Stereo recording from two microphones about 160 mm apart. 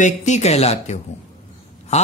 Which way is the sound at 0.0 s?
50° left (ahead or behind).